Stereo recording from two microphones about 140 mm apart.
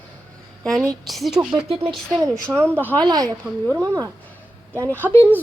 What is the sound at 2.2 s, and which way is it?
Speech, 25° right (ahead or behind).